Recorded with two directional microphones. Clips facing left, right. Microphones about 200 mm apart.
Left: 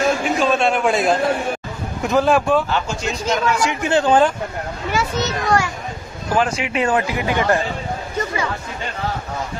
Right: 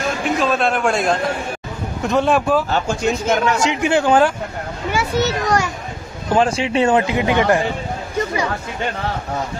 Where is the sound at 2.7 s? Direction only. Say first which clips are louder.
Right 4 dB; 50° right (ahead or behind).